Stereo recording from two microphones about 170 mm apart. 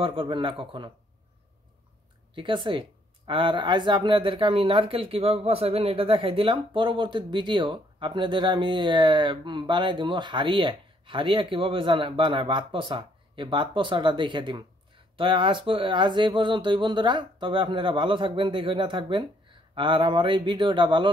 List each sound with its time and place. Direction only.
0.0 s a man's voice: 30° right (ahead or behind)
2.3 s speech: 30° right (ahead or behind)